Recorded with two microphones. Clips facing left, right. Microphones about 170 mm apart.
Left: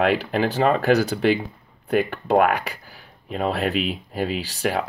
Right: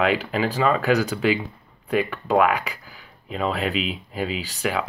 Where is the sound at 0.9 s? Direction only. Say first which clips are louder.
Left 2 dB; 35° left (ahead or behind).